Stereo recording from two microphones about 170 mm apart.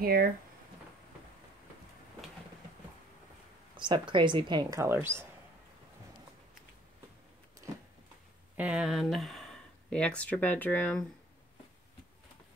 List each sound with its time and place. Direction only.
0.0 s speech: 60° right (ahead or behind)
3.7 s speech: 30° right (ahead or behind)
8.5 s speech: 5° right (ahead or behind)